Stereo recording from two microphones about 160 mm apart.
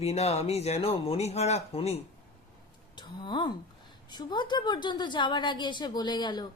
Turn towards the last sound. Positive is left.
turn(degrees=30)  # may be behind; listen again after turning